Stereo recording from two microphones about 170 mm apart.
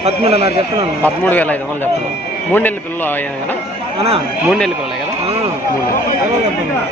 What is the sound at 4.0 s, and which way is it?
Speech, 35° right (ahead or behind).